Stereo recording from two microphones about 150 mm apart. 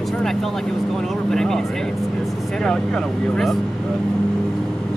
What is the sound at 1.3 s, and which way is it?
Speech, 5° left (ahead or behind).